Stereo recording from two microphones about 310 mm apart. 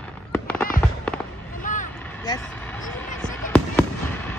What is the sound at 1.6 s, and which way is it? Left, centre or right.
Vehicle, left.